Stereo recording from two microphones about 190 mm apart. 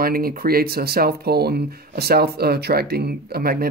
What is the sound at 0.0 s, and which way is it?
Speech, 50° right (ahead or behind).